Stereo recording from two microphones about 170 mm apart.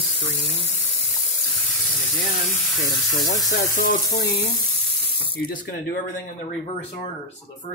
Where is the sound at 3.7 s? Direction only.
60° left (ahead or behind).